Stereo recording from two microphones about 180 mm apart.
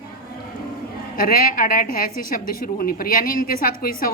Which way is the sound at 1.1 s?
55° left (ahead or behind).